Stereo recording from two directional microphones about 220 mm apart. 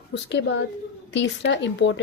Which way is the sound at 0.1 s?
55° left (ahead or behind).